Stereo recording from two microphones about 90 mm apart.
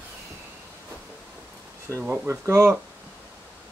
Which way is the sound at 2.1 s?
30° right (ahead or behind).